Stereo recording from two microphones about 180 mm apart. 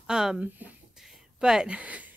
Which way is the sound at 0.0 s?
5° right (ahead or behind).